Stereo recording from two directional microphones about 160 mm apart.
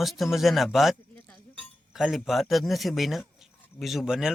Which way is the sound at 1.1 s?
10° left (ahead or behind).